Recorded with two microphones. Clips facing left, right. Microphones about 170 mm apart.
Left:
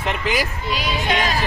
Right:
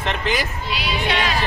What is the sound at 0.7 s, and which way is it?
Speech, 45° left (ahead or behind).